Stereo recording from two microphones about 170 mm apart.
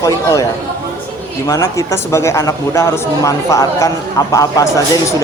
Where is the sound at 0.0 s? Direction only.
20° left (ahead or behind).